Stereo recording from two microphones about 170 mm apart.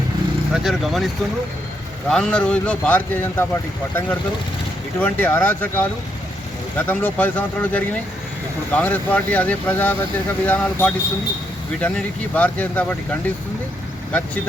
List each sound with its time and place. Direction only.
0.6 s speech: centre (ahead or behind)
2.0 s speech: 5° left (ahead or behind)